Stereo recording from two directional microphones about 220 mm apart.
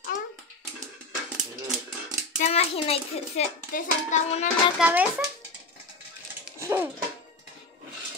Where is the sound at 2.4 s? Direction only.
30° left (ahead or behind).